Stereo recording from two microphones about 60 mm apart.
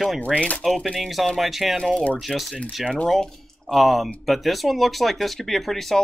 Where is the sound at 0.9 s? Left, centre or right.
Centre.